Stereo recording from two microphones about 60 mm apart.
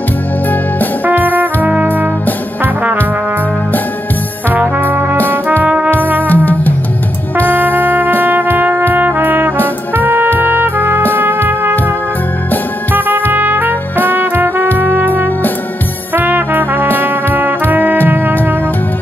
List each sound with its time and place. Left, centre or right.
1.0 s music: right
4.6 s trombone: right
5.6 s music: centre
6.2 s music: left
7.4 s music: right
8.9 s trumpet: right
13.3 s trumpet: right
14.0 s music: right
14.8 s brass instrument: right
16.2 s trombone: right
18.0 s music: right